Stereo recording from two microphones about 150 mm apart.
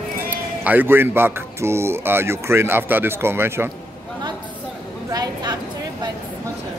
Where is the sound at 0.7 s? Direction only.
15° right (ahead or behind).